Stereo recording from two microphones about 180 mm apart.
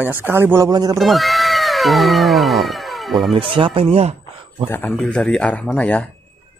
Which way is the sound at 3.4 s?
30° right (ahead or behind).